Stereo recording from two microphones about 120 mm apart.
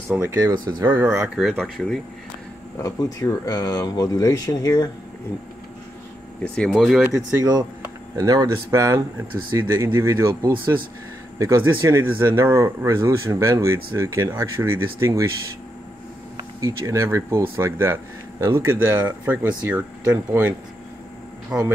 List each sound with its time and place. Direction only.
0.1 s speech: 20° right (ahead or behind)
0.4 s speech: 35° right (ahead or behind)
0.8 s speech: 20° right (ahead or behind)
1.3 s speech: centre (ahead or behind)
2.8 s speech: 25° left (ahead or behind)
6.4 s speech: 5° left (ahead or behind)
7.1 s speech: 30° right (ahead or behind)
16.6 s speech: 25° right (ahead or behind); by 21.7 s 5° right (ahead or behind)